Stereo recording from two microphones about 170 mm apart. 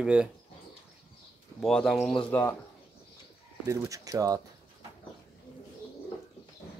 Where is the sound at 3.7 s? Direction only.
20° right (ahead or behind).